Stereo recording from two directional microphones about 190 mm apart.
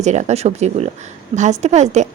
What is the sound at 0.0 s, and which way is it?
A woman's voice, 40° right (ahead or behind).